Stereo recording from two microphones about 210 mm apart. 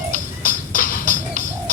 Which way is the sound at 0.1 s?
40° left (ahead or behind).